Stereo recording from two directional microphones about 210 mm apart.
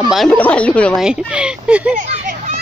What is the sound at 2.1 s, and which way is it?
Children playing, 35° right (ahead or behind).